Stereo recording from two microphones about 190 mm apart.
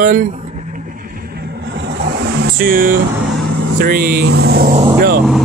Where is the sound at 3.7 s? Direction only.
50° right (ahead or behind).